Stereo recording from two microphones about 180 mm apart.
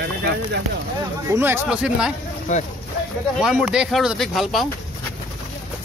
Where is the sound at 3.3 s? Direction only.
5° right (ahead or behind).